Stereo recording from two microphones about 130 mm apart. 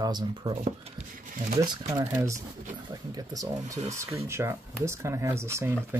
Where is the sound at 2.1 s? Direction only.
25° right (ahead or behind).